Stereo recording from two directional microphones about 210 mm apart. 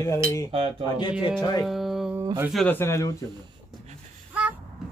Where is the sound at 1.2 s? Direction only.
20° left (ahead or behind).